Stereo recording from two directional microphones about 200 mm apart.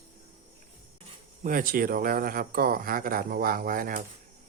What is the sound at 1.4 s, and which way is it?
Speech, 45° right (ahead or behind).